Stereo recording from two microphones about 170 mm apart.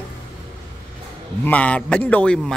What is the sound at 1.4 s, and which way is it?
A man's voice, 10° left (ahead or behind).